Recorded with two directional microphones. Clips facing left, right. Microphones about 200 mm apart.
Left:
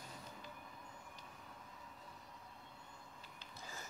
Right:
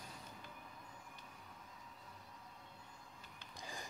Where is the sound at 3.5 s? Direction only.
15° right (ahead or behind).